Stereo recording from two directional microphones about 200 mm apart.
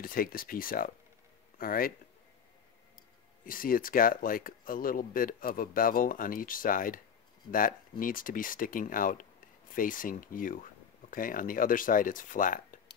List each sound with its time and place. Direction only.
0.0 s speech: 45° left (ahead or behind)
3.4 s speech: 45° left (ahead or behind)